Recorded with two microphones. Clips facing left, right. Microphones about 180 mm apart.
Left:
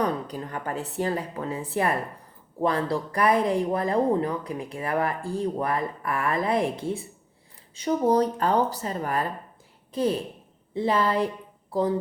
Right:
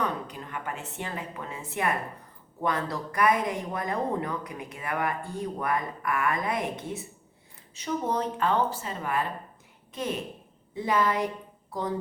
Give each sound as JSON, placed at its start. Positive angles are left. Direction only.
{"t": 0.0, "sound": "speech", "side_deg": 35}